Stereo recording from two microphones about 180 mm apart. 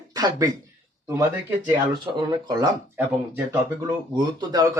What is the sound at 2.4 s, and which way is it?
Speech, 20° right (ahead or behind).